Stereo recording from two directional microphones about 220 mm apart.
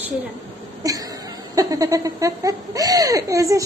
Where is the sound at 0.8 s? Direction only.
15° right (ahead or behind).